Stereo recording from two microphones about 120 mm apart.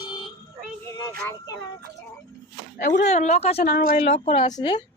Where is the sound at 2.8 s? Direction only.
80° left; by 4.1 s 65° left (ahead or behind).